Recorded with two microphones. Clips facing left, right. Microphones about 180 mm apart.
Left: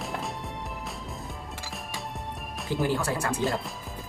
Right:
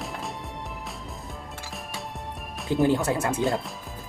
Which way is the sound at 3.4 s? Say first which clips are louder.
Right 3 dB; centre (ahead or behind).